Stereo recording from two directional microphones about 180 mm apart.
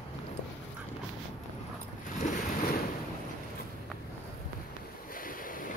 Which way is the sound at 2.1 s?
45° left (ahead or behind).